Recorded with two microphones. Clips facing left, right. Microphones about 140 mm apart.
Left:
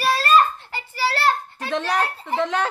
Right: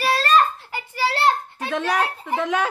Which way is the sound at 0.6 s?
10° right (ahead or behind).